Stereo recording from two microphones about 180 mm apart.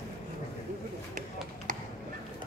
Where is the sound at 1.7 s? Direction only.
45° right (ahead or behind).